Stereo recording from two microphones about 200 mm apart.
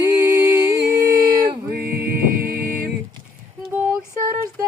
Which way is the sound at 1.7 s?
50° right (ahead or behind).